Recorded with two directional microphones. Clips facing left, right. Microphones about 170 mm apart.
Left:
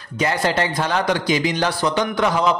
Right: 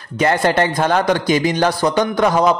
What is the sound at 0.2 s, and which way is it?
A man's voice, 55° right (ahead or behind).